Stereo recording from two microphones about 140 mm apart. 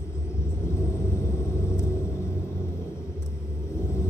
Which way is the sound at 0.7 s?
20° left (ahead or behind).